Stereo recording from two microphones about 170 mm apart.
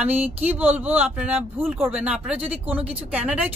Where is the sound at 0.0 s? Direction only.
10° right (ahead or behind).